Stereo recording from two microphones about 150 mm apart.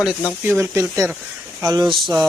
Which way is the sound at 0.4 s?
15° right (ahead or behind).